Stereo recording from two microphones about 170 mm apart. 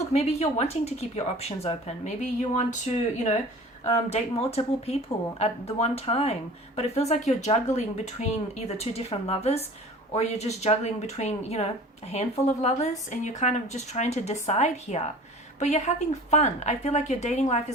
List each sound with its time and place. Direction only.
0.1 s speech: 40° left (ahead or behind)
4.1 s speech: 40° left (ahead or behind)